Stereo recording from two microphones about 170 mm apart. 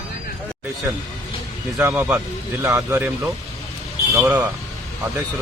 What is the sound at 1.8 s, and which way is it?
Speech, 10° right (ahead or behind).